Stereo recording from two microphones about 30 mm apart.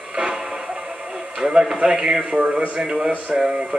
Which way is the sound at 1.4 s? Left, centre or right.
Centre.